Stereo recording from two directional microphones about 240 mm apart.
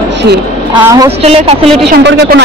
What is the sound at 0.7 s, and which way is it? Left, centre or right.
Speech, centre.